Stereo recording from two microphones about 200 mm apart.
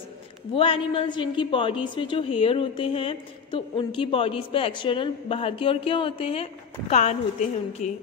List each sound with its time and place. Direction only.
0.6 s a woman's voice: 25° left (ahead or behind)